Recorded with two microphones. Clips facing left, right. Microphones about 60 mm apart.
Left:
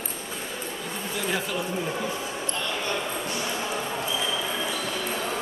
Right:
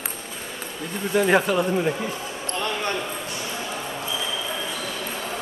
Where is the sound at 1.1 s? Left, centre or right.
Right.